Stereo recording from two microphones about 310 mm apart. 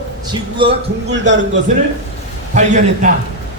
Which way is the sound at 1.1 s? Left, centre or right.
Right.